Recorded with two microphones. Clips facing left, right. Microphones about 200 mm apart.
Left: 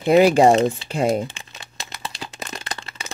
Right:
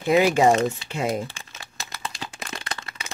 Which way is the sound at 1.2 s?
20° left (ahead or behind).